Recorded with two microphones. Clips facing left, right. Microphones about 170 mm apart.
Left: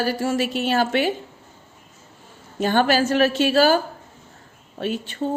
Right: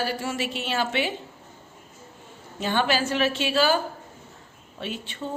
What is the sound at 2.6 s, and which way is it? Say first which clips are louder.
A woman's voice: left 6 dB; 45° left (ahead or behind).